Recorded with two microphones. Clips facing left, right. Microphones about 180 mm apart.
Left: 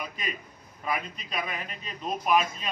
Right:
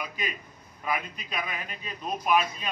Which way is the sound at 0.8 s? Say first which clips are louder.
Even; centre (ahead or behind).